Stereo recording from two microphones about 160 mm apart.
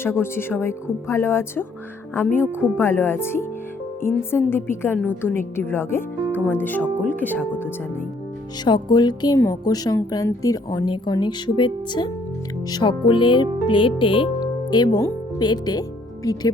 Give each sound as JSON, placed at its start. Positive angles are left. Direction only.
{"t": 0.0, "sound": "speech", "side_deg": 15}
{"t": 2.5, "sound": "speech", "side_deg": -10}
{"t": 2.7, "sound": "speech", "side_deg": 15}
{"t": 8.6, "sound": "a woman's voice", "side_deg": 30}